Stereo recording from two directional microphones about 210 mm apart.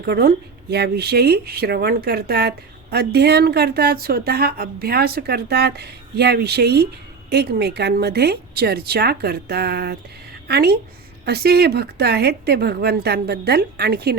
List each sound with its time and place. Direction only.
0.0 s speech: 45° right (ahead or behind)